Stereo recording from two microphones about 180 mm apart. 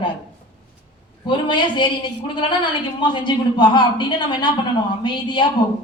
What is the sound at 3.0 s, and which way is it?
Speech, 25° left (ahead or behind).